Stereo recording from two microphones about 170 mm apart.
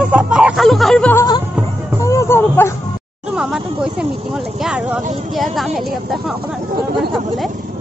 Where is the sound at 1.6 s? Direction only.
5° right (ahead or behind).